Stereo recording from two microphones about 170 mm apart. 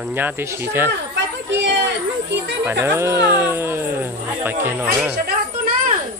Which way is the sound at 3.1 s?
70° right (ahead or behind).